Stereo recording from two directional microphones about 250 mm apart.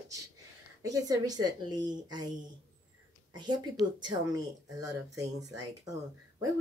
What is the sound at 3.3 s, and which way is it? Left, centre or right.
A woman's voice, centre.